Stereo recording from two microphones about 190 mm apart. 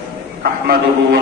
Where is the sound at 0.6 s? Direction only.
50° right (ahead or behind).